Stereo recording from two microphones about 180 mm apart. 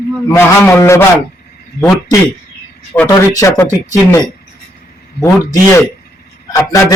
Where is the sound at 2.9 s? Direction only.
15° left (ahead or behind).